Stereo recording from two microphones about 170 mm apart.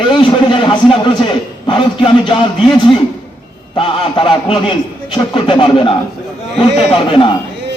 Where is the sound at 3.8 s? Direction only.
30° left (ahead or behind).